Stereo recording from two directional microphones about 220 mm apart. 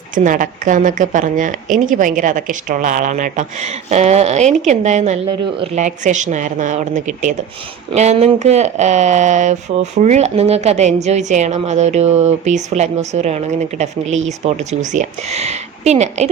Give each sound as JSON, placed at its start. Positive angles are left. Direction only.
{"t": 0.1, "sound": "speech", "side_deg": -35}